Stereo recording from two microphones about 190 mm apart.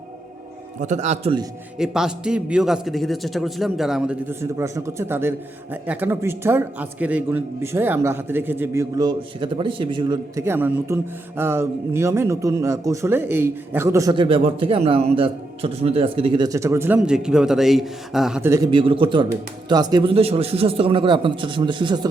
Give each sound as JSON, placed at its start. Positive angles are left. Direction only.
{"t": 0.8, "sound": "a man's voice", "side_deg": -40}
{"t": 1.8, "sound": "a man's voice", "side_deg": -5}
{"t": 18.5, "sound": "speech", "side_deg": -20}